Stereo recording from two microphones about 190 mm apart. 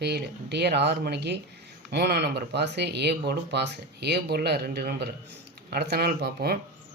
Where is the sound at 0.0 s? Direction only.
60° right (ahead or behind).